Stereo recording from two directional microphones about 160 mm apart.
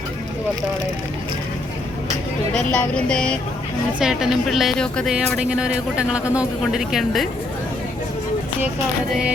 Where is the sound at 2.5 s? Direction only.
5° left (ahead or behind).